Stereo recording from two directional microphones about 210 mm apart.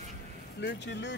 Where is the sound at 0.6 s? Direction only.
55° left (ahead or behind).